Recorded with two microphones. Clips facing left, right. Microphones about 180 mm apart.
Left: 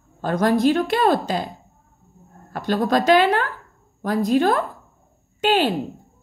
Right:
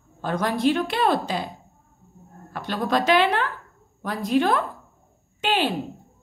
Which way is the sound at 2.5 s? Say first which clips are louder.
Left 4 dB; 45° left (ahead or behind).